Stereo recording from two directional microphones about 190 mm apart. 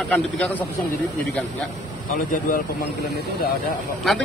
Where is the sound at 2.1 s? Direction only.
45° left (ahead or behind).